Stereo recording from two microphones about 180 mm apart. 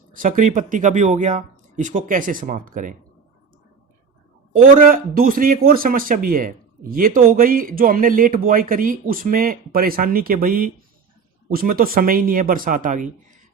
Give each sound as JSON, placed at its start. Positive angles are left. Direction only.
{"t": 0.1, "sound": "speech", "side_deg": -50}
{"t": 4.5, "sound": "speech", "side_deg": -50}